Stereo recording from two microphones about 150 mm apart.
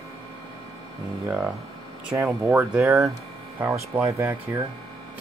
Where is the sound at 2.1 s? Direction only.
10° right (ahead or behind).